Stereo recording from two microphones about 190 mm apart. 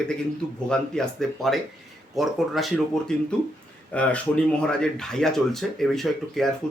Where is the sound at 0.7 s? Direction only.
Centre (ahead or behind).